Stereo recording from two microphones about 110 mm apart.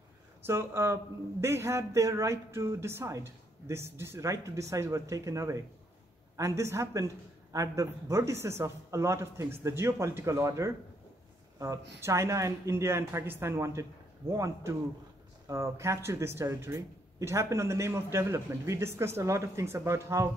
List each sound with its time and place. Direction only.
0.5 s speech: 25° right (ahead or behind)